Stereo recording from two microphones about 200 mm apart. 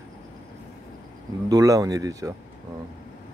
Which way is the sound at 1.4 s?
15° right (ahead or behind).